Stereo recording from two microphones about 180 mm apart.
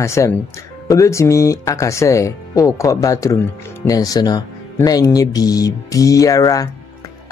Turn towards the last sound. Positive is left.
turn(degrees=20)  # may be behind; listen again after turning